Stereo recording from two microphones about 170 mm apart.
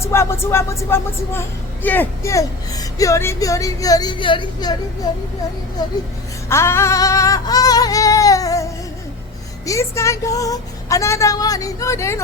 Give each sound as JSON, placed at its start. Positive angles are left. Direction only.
{"t": 0.0, "sound": "speech", "side_deg": 15}
{"t": 6.5, "sound": "singing", "side_deg": 15}
{"t": 9.6, "sound": "speech", "side_deg": 15}